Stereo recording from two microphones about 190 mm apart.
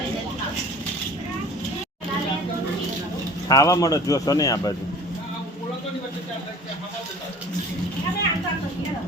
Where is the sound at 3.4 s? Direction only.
20° left (ahead or behind).